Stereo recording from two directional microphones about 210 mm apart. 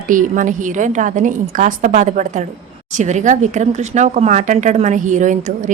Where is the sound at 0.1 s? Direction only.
40° right (ahead or behind).